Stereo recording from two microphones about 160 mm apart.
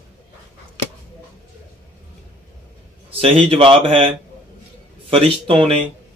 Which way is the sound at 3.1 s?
35° right (ahead or behind).